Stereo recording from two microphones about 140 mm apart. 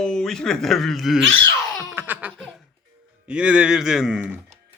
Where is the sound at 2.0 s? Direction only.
10° right (ahead or behind).